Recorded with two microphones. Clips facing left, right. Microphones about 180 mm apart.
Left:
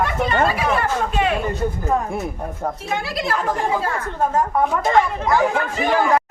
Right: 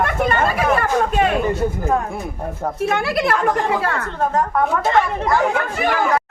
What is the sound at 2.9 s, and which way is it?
Speech, 60° right (ahead or behind).